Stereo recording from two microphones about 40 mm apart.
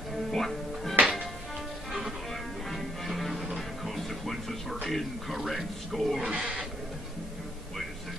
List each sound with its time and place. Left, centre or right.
0.3 s music: centre
2.7 s music: centre
4.8 s a man's voice: centre
6.3 s a sound: centre